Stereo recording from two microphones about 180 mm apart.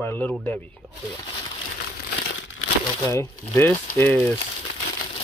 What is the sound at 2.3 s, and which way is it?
Crumpling, 90° left.